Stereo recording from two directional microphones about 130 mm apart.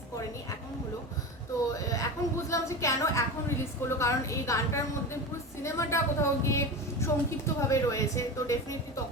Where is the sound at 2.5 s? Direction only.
25° left (ahead or behind).